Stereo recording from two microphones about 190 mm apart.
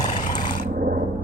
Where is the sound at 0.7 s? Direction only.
50° right (ahead or behind).